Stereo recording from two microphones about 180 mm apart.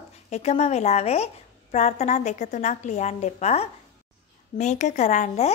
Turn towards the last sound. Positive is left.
turn(degrees=40)  # may be behind; listen again after turning